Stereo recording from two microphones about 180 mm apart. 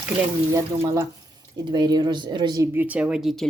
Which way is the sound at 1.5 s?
25° right (ahead or behind).